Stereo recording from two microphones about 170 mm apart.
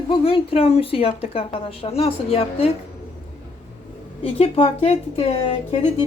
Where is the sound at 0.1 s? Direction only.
35° left (ahead or behind).